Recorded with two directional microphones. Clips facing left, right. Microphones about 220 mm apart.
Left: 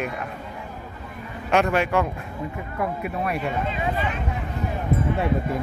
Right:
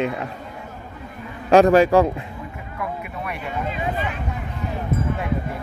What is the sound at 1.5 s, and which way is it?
Speech, 35° right (ahead or behind).